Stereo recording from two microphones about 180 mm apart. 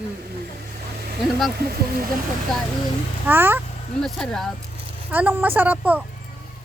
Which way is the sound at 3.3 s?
10° right (ahead or behind).